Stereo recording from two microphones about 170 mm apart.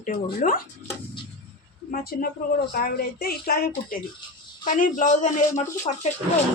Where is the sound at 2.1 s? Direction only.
55° left (ahead or behind).